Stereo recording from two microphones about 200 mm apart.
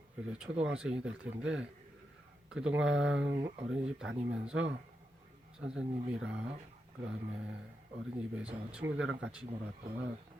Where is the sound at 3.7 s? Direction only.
5° right (ahead or behind).